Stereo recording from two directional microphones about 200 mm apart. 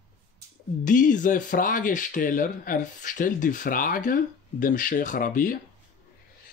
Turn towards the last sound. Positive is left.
turn(degrees=45)  # may be behind; listen again after turning